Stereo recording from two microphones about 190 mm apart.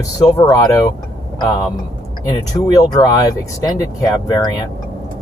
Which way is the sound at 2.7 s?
20° left (ahead or behind).